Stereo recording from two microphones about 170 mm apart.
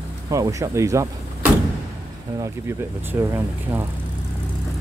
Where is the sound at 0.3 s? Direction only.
20° right (ahead or behind).